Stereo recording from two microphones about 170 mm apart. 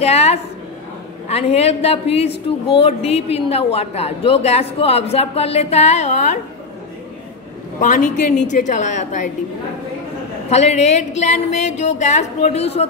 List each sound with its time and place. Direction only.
0.0 s a woman's voice: 40° left (ahead or behind)
7.8 s a woman's voice: 50° left (ahead or behind)
10.5 s a woman's voice: 40° left (ahead or behind)